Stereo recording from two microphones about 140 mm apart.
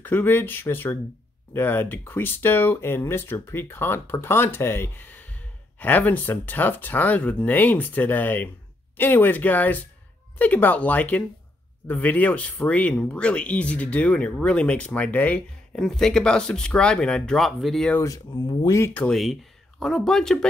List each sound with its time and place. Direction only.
0.0 s speech: 15° left (ahead or behind)
18.0 s speech: 25° left (ahead or behind)
18.9 s speech: 5° left (ahead or behind)